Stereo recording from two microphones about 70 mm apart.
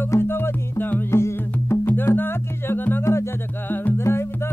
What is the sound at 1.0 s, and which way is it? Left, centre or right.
Music, left.